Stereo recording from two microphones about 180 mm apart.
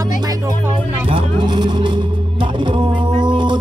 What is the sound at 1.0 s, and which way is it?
Music, 25° right (ahead or behind).